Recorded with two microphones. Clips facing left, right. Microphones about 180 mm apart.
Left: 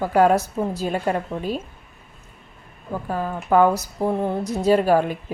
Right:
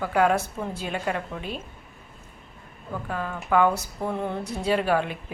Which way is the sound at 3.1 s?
35° left (ahead or behind).